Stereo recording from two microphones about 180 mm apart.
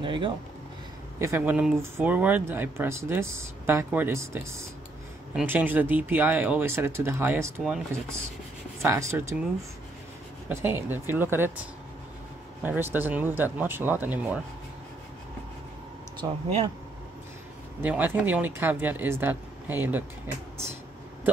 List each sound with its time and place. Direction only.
0.0 s speech: 25° right (ahead or behind)
1.2 s speech: 10° right (ahead or behind)
8.8 s speech: 15° right (ahead or behind)
10.5 s speech: 15° right (ahead or behind)
12.6 s speech: 10° right (ahead or behind)
16.2 s speech: 30° right (ahead or behind)
17.8 s speech: 10° right (ahead or behind)